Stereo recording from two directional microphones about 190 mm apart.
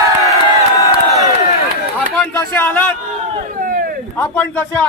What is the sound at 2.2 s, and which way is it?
Speech, 10° left (ahead or behind).